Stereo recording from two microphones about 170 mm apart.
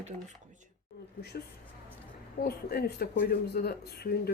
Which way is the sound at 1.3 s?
65° left (ahead or behind).